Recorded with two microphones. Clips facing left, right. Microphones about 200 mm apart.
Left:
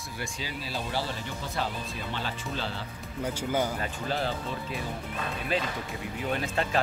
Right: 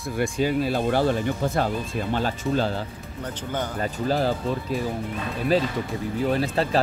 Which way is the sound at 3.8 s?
40° right (ahead or behind).